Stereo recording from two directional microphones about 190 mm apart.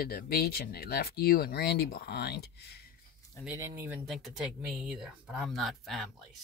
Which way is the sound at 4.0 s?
Centre (ahead or behind).